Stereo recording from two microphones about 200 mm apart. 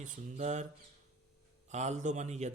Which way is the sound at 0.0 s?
35° right (ahead or behind).